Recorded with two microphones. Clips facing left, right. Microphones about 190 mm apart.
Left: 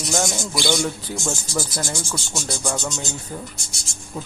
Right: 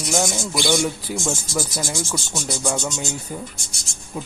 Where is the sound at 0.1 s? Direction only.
5° right (ahead or behind).